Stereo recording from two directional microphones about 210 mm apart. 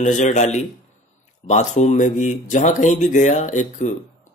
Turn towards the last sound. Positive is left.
turn(degrees=35)  # may be behind; listen again after turning